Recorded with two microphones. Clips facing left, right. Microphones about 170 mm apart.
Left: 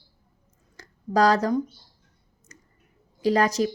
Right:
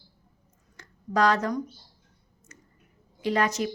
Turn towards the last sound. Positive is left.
turn(degrees=35)  # may be behind; listen again after turning